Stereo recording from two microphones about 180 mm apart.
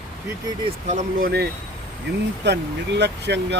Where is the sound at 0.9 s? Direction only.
40° right (ahead or behind).